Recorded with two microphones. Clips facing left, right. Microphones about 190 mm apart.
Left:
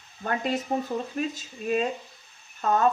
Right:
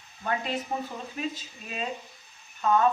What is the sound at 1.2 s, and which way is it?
Speech, 45° left (ahead or behind).